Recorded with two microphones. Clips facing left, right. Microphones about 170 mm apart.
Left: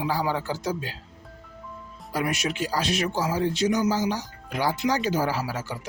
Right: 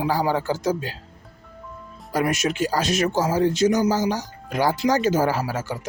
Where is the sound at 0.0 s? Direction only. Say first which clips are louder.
Right 4 dB; 40° right (ahead or behind).